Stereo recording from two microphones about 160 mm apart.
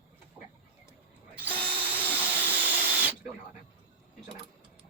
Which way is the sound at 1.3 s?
10° right (ahead or behind).